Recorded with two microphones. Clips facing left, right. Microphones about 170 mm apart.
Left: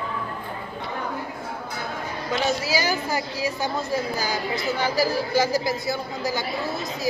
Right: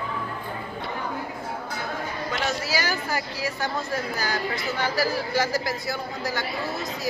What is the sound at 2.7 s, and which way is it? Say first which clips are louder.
A woman's voice: left 3 dB; 15° left (ahead or behind).